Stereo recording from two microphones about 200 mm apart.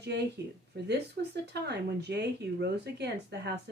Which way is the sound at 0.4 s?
55° right (ahead or behind).